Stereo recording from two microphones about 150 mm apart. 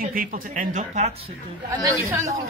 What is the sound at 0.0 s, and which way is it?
Speech, 70° right (ahead or behind).